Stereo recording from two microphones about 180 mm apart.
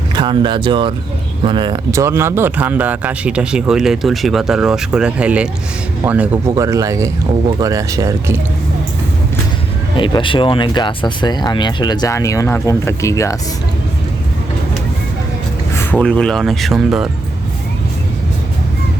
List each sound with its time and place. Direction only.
0.2 s speech: 25° right (ahead or behind)
10.0 s speech: 25° left (ahead or behind)
15.7 s speech: 10° left (ahead or behind)